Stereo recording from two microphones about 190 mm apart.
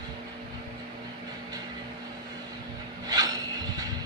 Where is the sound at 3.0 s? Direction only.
20° right (ahead or behind).